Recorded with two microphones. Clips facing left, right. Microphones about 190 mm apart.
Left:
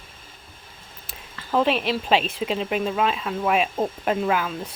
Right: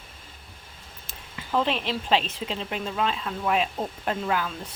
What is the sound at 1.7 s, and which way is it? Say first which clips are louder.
Speech: left 4 dB; 15° left (ahead or behind).